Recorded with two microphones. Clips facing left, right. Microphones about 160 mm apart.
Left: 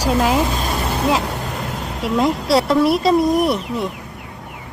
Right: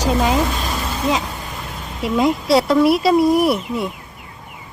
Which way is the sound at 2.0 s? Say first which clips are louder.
Right 1 dB; centre (ahead or behind).